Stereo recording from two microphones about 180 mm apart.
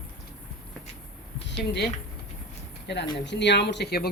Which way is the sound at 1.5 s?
65° left (ahead or behind).